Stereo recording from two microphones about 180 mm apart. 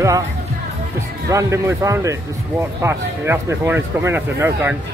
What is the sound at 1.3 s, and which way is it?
Speech, 15° right (ahead or behind).